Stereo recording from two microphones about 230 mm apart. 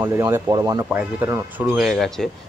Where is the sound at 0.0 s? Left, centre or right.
Centre.